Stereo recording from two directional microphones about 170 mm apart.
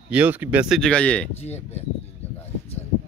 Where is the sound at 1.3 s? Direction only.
40° left (ahead or behind).